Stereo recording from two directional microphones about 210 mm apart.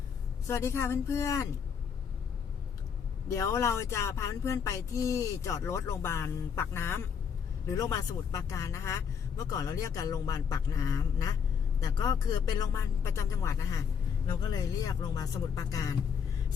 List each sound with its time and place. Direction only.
0.4 s speech: 15° left (ahead or behind)
3.2 s speech: 15° left (ahead or behind)